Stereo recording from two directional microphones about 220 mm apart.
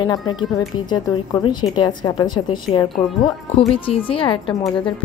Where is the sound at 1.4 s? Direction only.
20° left (ahead or behind).